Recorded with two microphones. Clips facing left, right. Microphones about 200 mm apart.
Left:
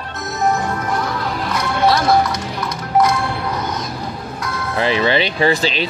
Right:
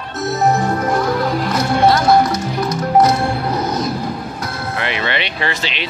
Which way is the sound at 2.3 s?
25° right (ahead or behind).